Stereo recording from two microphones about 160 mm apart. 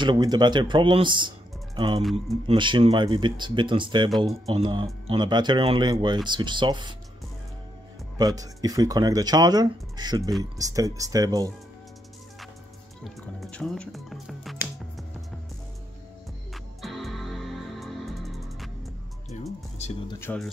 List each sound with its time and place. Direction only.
0.0 s speech: 30° right (ahead or behind)
2.4 s speech: 30° right (ahead or behind)
8.2 s speech: 25° right (ahead or behind)
13.0 s music: 5° left (ahead or behind)
16.8 s music: centre (ahead or behind)
20.2 s speech: 10° left (ahead or behind)